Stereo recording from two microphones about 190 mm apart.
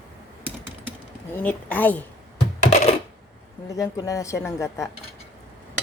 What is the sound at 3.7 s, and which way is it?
Speech, 15° left (ahead or behind).